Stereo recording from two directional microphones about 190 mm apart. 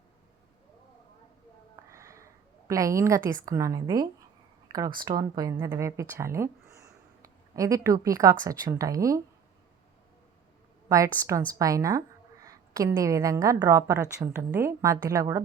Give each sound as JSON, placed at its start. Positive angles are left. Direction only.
{"t": 1.9, "sound": "a sound", "side_deg": -15}
{"t": 2.6, "sound": "a woman's voice", "side_deg": -15}
{"t": 10.8, "sound": "a woman's voice", "side_deg": -15}